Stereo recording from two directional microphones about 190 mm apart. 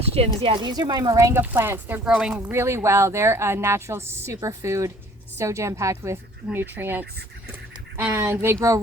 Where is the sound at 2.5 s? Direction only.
15° right (ahead or behind).